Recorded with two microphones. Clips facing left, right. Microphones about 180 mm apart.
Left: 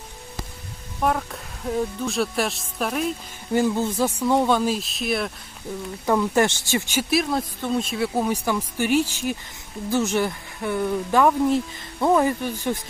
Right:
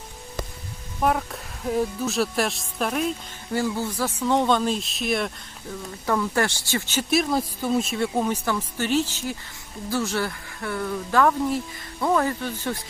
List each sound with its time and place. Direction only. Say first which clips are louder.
1.0 s speech: even; centre (ahead or behind)
3.5 s speech: left 4 dB; 20° left (ahead or behind)
4.2 s speech: even; 10° left (ahead or behind)
6.1 s speech: left 4 dB; 20° left (ahead or behind)
7.1 s speech: right 1 dB; centre (ahead or behind)